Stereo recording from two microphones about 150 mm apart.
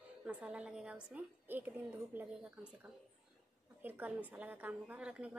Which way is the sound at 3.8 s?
10° right (ahead or behind).